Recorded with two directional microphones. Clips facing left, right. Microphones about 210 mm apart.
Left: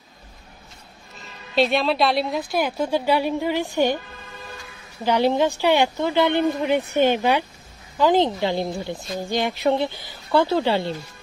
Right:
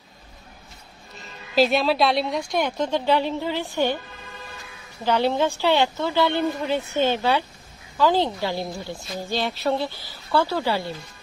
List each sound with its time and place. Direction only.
1.5 s a woman's voice: centre (ahead or behind); by 4.0 s 15° left (ahead or behind)
5.0 s a woman's voice: 15° left (ahead or behind)